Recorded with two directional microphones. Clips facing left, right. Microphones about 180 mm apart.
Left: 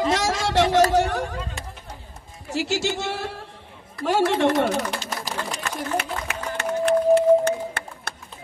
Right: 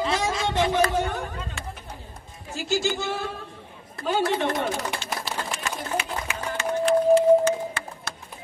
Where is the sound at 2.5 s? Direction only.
75° left (ahead or behind).